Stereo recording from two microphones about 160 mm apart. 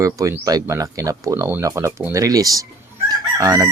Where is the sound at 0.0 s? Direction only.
20° right (ahead or behind).